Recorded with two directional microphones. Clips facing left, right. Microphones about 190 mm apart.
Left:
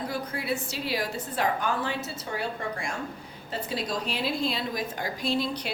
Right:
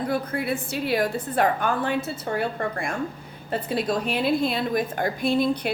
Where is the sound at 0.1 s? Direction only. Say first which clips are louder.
Right 5 dB; 55° right (ahead or behind).